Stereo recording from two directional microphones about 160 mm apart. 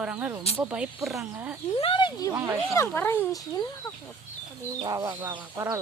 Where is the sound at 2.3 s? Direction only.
15° right (ahead or behind).